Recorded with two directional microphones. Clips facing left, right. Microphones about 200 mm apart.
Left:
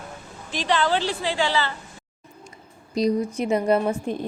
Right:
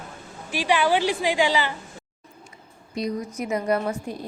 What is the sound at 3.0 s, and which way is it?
A woman's voice, 30° left (ahead or behind).